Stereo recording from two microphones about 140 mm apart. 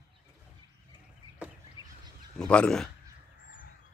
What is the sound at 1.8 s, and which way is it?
Pig, 25° right (ahead or behind).